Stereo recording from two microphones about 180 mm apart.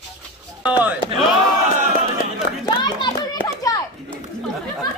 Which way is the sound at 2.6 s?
25° left (ahead or behind).